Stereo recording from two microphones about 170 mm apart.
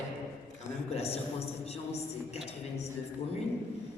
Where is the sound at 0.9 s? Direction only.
35° left (ahead or behind).